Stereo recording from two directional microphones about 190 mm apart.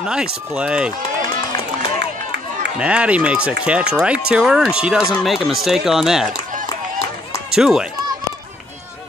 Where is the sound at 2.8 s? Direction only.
5° right (ahead or behind).